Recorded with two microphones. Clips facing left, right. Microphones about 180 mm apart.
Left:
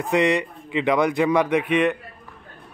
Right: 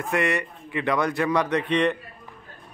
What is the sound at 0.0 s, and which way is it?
Speech, 20° left (ahead or behind).